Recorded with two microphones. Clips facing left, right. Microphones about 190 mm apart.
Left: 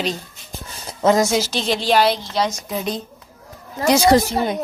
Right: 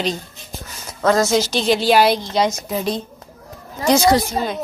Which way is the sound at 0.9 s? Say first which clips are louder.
Left 1 dB; 20° left (ahead or behind).